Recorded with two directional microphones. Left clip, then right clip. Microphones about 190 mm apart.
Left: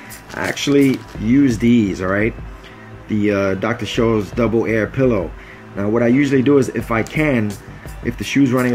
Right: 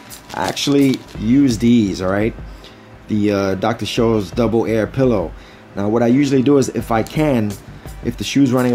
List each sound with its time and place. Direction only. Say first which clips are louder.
0.3 s a sound: right 1 dB; 10° right (ahead or behind)
0.7 s speech: left 2 dB; 15° right (ahead or behind)
5.8 s speech: even; 10° right (ahead or behind)
6.1 s speech: left 1 dB; 20° right (ahead or behind)